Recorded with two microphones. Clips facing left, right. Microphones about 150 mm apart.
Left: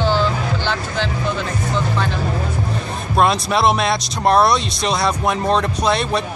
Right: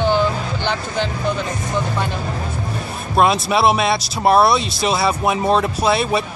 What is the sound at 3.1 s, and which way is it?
Speech, centre (ahead or behind).